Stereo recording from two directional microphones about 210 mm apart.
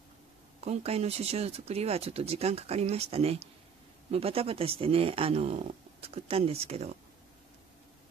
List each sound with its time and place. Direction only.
0.6 s speech: 30° right (ahead or behind)